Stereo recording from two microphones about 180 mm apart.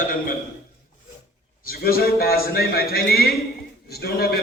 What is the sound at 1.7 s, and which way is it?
Speech, 55° left (ahead or behind).